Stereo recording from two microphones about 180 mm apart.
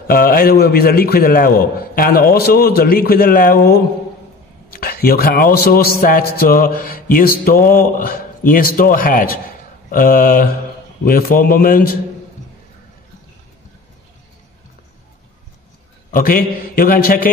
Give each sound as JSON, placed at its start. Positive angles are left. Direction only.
{"t": 0.1, "sound": "a man's voice", "side_deg": 55}
{"t": 16.1, "sound": "a man's voice", "side_deg": 55}